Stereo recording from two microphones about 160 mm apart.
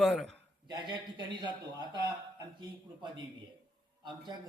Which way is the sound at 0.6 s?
25° right (ahead or behind).